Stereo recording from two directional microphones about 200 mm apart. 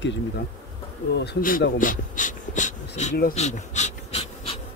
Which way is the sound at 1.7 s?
40° left (ahead or behind).